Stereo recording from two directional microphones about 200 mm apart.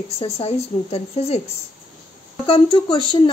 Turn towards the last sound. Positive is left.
turn(degrees=20)  # may be behind; listen again after turning